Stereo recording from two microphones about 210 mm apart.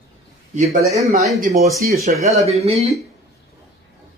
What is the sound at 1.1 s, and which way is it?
Speech, 30° right (ahead or behind).